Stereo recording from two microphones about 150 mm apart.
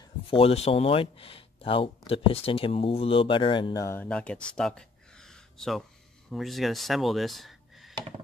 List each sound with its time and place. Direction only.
0.3 s speech: 40° left (ahead or behind)
3.8 s speech: 15° left (ahead or behind)